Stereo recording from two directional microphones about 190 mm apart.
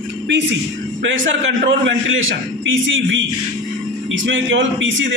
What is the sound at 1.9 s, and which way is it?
A man's voice, 90° right.